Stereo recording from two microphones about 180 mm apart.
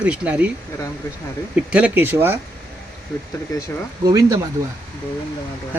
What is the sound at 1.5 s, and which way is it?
Speech, 5° right (ahead or behind).